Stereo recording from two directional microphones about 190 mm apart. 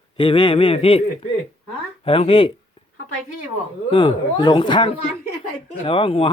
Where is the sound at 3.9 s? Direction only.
25° left (ahead or behind).